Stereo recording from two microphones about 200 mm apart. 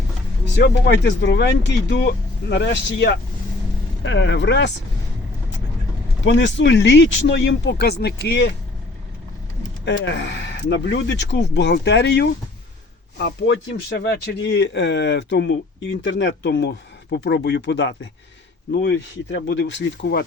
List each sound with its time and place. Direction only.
0.5 s speech: 60° left (ahead or behind)
6.2 s speech: 65° left (ahead or behind)
9.8 s speech: 60° left (ahead or behind)